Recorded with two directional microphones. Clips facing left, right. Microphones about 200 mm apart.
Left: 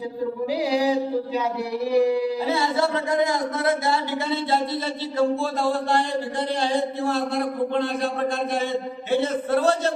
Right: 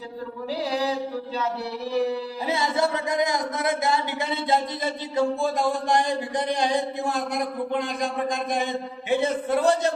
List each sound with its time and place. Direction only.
0.7 s music: 10° left (ahead or behind)
1.9 s a sound: 15° left (ahead or behind)
2.5 s a man's voice: 20° right (ahead or behind)